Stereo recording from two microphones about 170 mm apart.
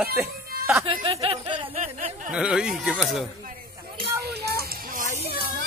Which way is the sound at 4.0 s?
70° right (ahead or behind).